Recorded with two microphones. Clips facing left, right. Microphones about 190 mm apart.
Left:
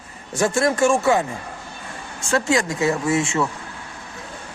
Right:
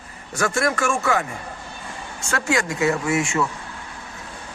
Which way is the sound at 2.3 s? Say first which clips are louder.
Left 3 dB; 30° left (ahead or behind).